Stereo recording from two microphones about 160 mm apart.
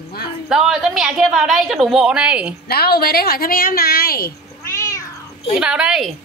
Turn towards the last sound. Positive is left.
turn(degrees=-5)  # may be behind; listen again after turning